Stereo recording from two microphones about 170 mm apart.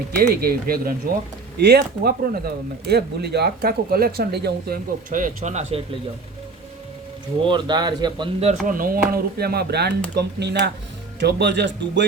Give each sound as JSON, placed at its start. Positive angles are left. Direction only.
{"t": 0.2, "sound": "speech", "side_deg": -60}
{"t": 1.5, "sound": "speech", "side_deg": -75}
{"t": 7.4, "sound": "speech", "side_deg": -25}
{"t": 8.4, "sound": "speech", "side_deg": -40}
{"t": 8.7, "sound": "speech", "side_deg": -55}